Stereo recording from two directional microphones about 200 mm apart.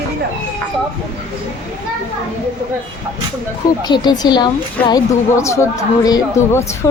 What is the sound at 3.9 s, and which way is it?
A woman's voice, 20° left (ahead or behind).